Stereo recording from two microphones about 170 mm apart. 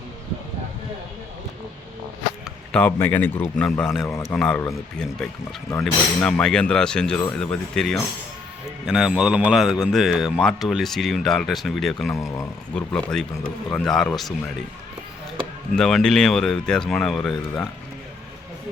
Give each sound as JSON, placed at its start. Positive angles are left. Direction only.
{"t": 2.7, "sound": "speech", "side_deg": 10}
{"t": 4.0, "sound": "speech", "side_deg": 15}
{"t": 15.7, "sound": "speech", "side_deg": 0}